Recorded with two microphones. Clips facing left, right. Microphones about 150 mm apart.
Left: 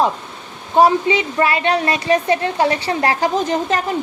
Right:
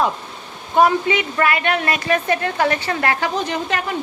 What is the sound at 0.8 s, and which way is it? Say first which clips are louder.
A woman's voice: left 2 dB; 30° left (ahead or behind).